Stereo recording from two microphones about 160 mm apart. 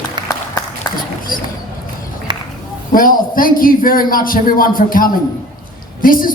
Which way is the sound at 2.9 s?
60° left (ahead or behind).